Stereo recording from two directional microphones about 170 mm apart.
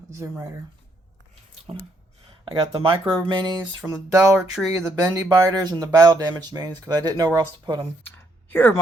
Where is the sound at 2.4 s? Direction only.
30° right (ahead or behind).